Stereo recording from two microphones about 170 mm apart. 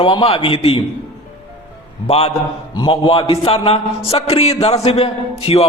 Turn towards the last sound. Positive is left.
turn(degrees=35)  # may be behind; listen again after turning